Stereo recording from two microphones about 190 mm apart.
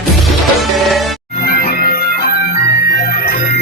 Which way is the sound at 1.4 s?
50° left (ahead or behind).